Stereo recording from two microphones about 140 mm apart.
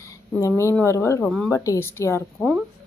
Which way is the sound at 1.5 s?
20° left (ahead or behind).